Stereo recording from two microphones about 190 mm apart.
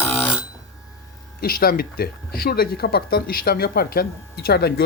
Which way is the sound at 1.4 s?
50° left (ahead or behind).